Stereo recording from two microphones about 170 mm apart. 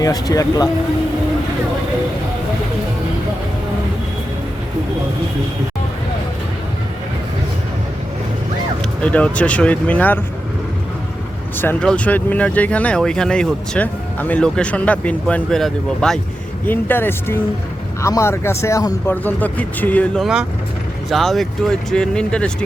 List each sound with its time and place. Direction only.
0.0 s speech: 20° left (ahead or behind)
9.0 s speech: 5° left (ahead or behind)
11.5 s speech: 10° left (ahead or behind)